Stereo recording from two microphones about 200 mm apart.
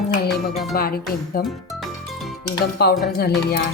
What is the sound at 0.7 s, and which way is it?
Speech, 50° left (ahead or behind).